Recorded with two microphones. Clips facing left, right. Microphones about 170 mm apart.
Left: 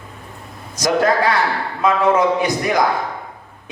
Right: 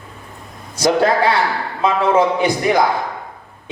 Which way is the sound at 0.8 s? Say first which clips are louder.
Right 2 dB; 30° right (ahead or behind).